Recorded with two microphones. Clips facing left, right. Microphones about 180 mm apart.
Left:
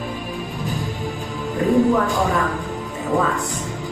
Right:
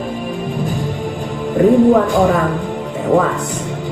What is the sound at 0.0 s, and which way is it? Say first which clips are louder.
Music: right 6 dB; 50° right (ahead or behind).